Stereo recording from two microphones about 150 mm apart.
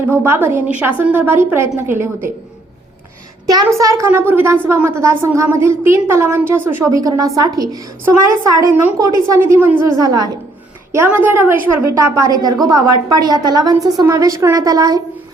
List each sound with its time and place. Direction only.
0.1 s a woman's voice: 15° right (ahead or behind)
3.4 s a woman's voice: 25° right (ahead or behind)
10.0 s a woman's voice: 25° right (ahead or behind)
10.9 s a woman's voice: 15° right (ahead or behind)
11.9 s a woman's voice: 25° right (ahead or behind)